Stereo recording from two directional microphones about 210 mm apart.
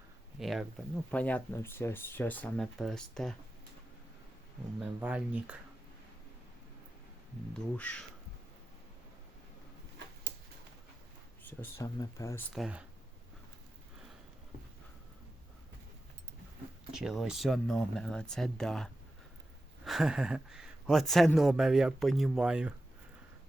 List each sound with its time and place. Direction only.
0.3 s speech: centre (ahead or behind)
4.8 s speech: 5° right (ahead or behind)
7.5 s speech: 5° left (ahead or behind)
11.4 s speech: 10° left (ahead or behind)
12.5 s speech: 5° right (ahead or behind)
16.9 s speech: centre (ahead or behind)